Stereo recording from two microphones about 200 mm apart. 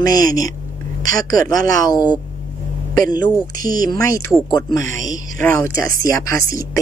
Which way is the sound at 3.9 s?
15° left (ahead or behind).